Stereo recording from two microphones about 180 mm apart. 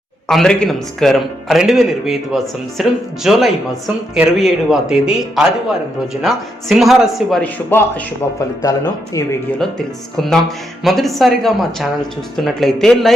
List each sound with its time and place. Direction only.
0.3 s a man's voice: 5° left (ahead or behind); by 9.2 s 20° left (ahead or behind)
9.6 s a man's voice: centre (ahead or behind)